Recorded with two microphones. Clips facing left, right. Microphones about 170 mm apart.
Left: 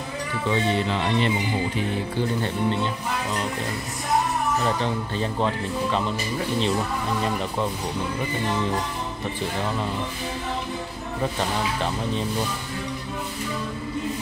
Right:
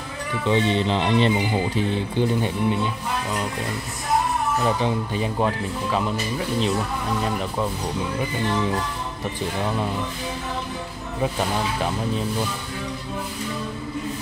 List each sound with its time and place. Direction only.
0.5 s speech: 25° right (ahead or behind)
2.1 s speech: 10° right (ahead or behind)
4.6 s speech: 15° right (ahead or behind)
11.1 s speech: 5° right (ahead or behind)